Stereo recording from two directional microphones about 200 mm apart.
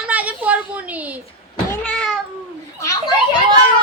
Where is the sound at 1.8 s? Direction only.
5° left (ahead or behind).